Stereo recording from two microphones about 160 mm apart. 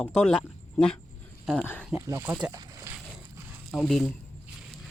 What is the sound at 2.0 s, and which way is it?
Speech, 15° right (ahead or behind).